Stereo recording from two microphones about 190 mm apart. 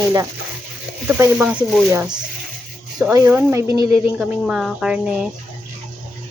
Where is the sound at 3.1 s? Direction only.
15° right (ahead or behind).